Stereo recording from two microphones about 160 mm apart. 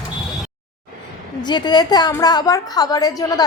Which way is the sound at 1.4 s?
25° left (ahead or behind).